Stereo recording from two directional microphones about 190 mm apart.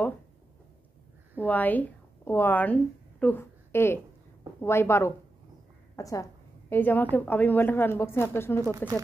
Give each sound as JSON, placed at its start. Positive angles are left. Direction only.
{"t": 1.4, "sound": "a woman's voice", "side_deg": 10}